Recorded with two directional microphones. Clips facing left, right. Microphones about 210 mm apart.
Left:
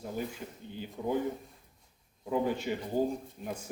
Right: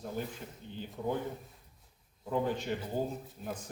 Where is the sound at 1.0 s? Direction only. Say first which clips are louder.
Left 1 dB; 10° left (ahead or behind).